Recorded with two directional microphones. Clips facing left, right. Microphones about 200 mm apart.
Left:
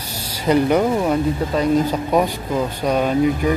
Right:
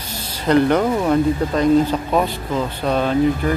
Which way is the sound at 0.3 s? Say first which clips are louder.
Right 1 dB; 10° left (ahead or behind).